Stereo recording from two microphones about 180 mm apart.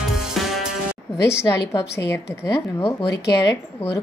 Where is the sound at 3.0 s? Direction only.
65° left (ahead or behind).